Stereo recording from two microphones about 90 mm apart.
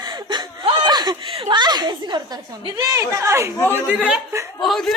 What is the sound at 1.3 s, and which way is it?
A woman's voice, 65° right (ahead or behind).